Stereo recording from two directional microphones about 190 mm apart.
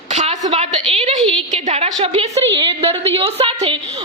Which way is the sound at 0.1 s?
40° right (ahead or behind).